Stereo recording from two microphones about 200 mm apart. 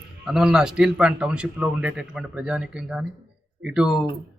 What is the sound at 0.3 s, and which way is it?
Speech, centre (ahead or behind).